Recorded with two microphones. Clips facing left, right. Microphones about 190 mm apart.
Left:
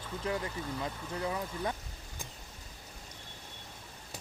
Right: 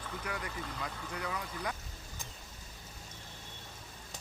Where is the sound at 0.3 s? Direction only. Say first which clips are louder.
Left 7 dB; 25° left (ahead or behind).